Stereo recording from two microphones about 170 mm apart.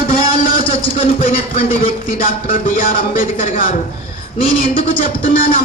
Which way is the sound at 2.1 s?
55° left (ahead or behind).